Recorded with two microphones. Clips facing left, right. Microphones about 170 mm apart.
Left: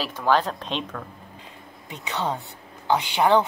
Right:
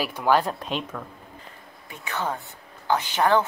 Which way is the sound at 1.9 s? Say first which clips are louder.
Left 2 dB; 20° left (ahead or behind).